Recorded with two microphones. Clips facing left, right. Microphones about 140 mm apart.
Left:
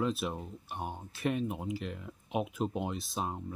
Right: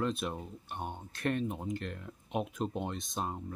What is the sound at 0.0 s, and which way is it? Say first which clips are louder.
Speech: left 1 dB; 5° left (ahead or behind).